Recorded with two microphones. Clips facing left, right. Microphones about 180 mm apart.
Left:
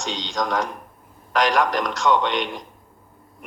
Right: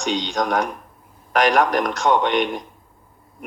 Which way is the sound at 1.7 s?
15° right (ahead or behind).